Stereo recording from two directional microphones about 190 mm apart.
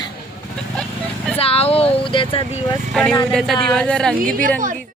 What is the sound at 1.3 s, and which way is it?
Speech, 30° left (ahead or behind).